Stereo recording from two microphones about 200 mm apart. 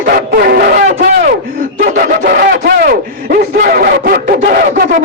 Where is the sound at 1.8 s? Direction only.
45° right (ahead or behind).